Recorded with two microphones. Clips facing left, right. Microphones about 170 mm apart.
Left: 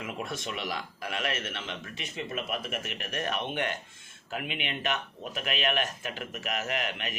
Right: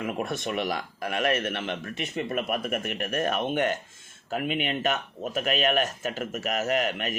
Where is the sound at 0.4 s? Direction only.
50° right (ahead or behind).